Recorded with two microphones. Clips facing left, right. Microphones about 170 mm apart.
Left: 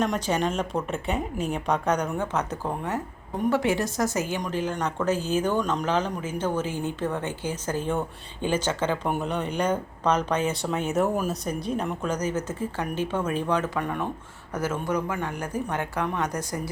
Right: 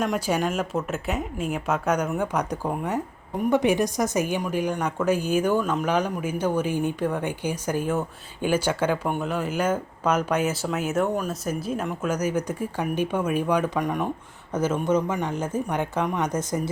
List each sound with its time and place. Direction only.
0.0 s a woman's voice: 10° right (ahead or behind)
9.0 s a woman's voice: centre (ahead or behind); by 16.7 s 20° right (ahead or behind)